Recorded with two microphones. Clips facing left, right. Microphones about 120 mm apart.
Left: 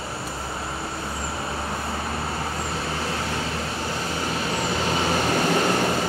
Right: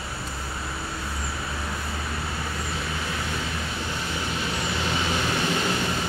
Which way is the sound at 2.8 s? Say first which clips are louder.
Left 3 dB; 35° left (ahead or behind).